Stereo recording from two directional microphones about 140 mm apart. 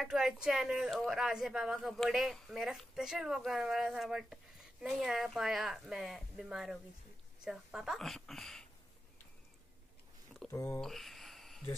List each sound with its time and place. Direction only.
0.0 s a woman's voice: 5° right (ahead or behind)
10.5 s speech: 20° left (ahead or behind)
10.8 s a sound: centre (ahead or behind)